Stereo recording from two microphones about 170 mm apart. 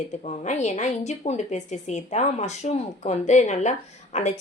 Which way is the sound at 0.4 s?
45° left (ahead or behind).